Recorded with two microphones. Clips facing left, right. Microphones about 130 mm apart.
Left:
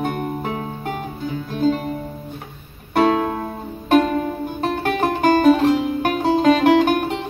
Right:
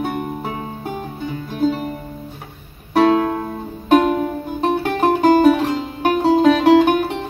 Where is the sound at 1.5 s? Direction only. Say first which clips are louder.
Even; 5° right (ahead or behind).